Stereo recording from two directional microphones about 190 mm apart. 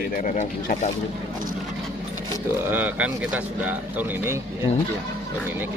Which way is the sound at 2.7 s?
10° right (ahead or behind).